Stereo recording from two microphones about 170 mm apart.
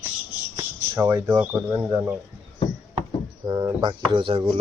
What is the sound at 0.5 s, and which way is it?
Speech, 15° right (ahead or behind).